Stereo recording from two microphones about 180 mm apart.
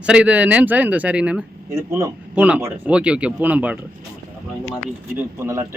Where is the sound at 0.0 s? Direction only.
5° right (ahead or behind).